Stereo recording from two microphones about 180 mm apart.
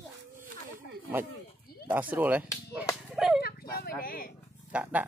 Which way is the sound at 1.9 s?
10° right (ahead or behind).